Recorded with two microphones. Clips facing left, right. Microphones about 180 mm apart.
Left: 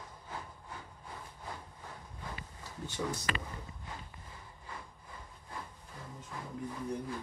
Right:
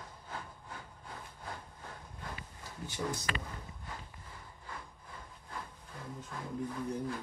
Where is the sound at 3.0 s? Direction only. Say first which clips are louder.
Even; 10° right (ahead or behind).